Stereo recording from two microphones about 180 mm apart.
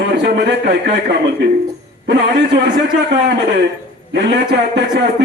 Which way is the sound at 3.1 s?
70° right (ahead or behind).